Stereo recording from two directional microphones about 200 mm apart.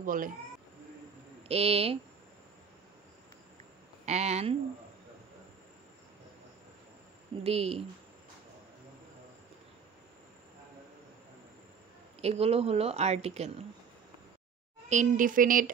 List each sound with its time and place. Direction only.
0.0 s speech: 40° right (ahead or behind)
1.5 s speech: 30° right (ahead or behind)
4.0 s speech: 35° right (ahead or behind)
7.4 s speech: 30° right (ahead or behind)
12.2 s speech: 30° right (ahead or behind)
14.9 s speech: 40° right (ahead or behind)